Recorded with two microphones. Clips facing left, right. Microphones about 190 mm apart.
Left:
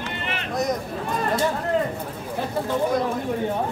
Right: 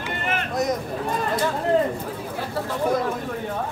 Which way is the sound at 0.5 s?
Centre (ahead or behind).